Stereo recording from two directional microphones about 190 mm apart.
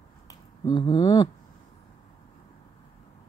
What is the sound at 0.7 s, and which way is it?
Speech, 30° left (ahead or behind).